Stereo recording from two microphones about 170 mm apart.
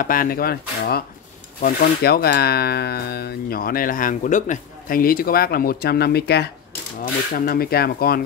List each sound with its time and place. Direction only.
0.0 s speech: 55° left (ahead or behind); by 6.5 s 75° left (ahead or behind)
7.3 s speech: 60° left (ahead or behind)